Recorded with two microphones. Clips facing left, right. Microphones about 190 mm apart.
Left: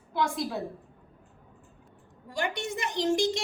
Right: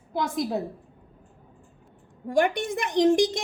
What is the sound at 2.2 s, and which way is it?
A woman's voice, 55° right (ahead or behind).